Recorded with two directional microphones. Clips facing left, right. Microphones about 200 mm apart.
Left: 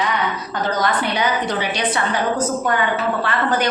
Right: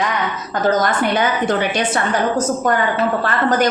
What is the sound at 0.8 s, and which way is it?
A woman's voice, 50° right (ahead or behind).